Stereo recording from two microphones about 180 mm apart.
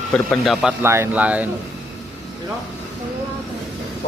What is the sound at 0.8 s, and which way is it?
Speech, 15° right (ahead or behind).